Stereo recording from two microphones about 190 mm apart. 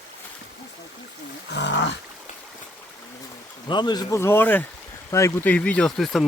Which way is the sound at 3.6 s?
25° left (ahead or behind).